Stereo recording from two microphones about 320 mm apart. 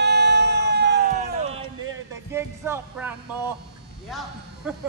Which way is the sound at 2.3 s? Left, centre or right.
Centre.